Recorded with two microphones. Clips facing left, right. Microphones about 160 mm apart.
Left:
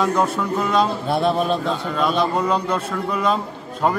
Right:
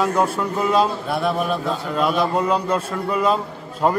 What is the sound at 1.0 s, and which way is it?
Speech, 25° left (ahead or behind).